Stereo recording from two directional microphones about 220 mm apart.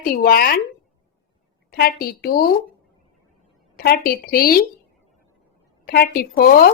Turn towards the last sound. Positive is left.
turn(degrees=45)  # may be behind; listen again after turning